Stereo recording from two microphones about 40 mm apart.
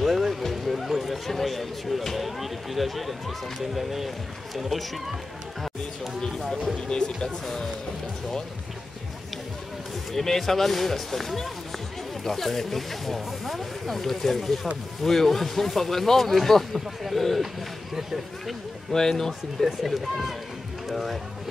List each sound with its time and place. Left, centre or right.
0.0 s music: centre
0.4 s a sound: centre
1.2 s speech: centre
6.9 s speech: centre
7.4 s speech: centre
10.1 s speech: centre
18.9 s speech: centre
19.6 s speech: centre
20.9 s speech: centre